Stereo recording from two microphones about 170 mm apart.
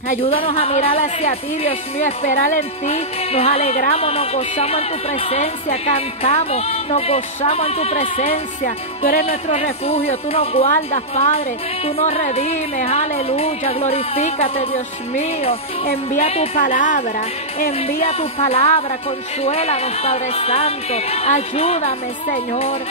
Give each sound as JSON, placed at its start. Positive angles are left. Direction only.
{"t": 0.1, "sound": "speech", "side_deg": 35}
{"t": 8.3, "sound": "music", "side_deg": 55}
{"t": 9.5, "sound": "speech", "side_deg": 35}
{"t": 16.5, "sound": "a woman's voice", "side_deg": 50}
{"t": 18.4, "sound": "speech", "side_deg": 35}